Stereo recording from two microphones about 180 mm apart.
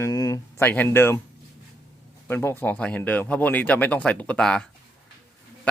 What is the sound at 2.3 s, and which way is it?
Speech, 15° left (ahead or behind).